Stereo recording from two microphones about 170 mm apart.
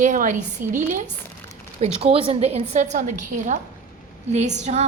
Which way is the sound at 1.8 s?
35° right (ahead or behind).